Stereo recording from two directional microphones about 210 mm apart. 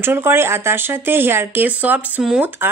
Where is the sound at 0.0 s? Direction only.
10° right (ahead or behind).